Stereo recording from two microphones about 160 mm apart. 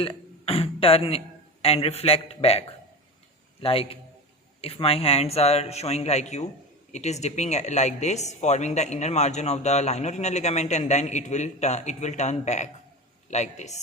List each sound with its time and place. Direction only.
0.0 s a man's voice: 35° left (ahead or behind)